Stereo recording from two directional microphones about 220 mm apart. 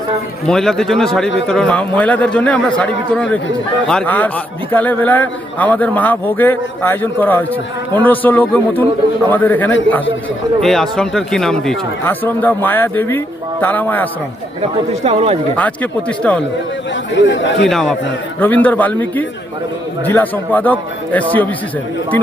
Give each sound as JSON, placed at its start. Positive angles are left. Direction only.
{"t": 0.4, "sound": "a man's voice", "side_deg": 0}
{"t": 15.0, "sound": "speech", "side_deg": -25}
{"t": 15.5, "sound": "a man's voice", "side_deg": 5}
{"t": 16.9, "sound": "speech", "side_deg": 55}
{"t": 17.7, "sound": "a man's voice", "side_deg": 0}